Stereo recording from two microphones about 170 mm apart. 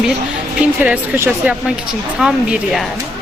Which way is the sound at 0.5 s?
10° right (ahead or behind).